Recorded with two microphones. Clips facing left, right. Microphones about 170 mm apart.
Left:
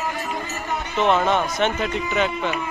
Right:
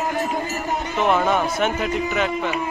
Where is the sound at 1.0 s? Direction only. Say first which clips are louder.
Even; 5° right (ahead or behind).